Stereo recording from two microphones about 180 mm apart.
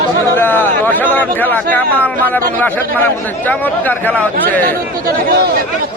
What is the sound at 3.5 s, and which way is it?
Speech, 10° left (ahead or behind).